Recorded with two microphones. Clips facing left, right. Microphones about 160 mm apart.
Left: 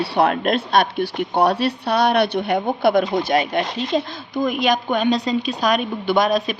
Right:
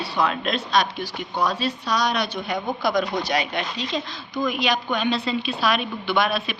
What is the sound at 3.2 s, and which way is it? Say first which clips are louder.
A woman's voice: left 6 dB; 50° left (ahead or behind).